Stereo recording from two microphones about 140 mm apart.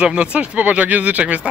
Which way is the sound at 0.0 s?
10° right (ahead or behind).